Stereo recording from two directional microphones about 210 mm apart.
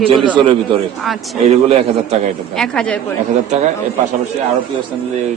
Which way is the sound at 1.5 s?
30° right (ahead or behind).